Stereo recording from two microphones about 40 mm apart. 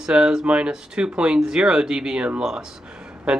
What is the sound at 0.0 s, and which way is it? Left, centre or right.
Speech, centre.